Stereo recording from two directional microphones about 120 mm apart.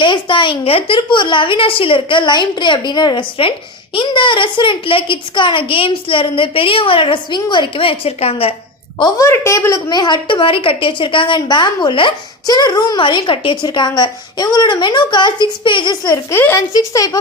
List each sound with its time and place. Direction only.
0.0 s speech: 40° left (ahead or behind)
9.0 s a woman's voice: 25° left (ahead or behind); by 16.0 s 40° left (ahead or behind)
16.0 s speech: 25° left (ahead or behind)
16.7 s a woman's voice: 30° left (ahead or behind)